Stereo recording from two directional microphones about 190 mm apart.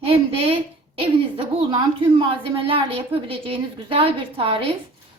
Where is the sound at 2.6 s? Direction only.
30° right (ahead or behind).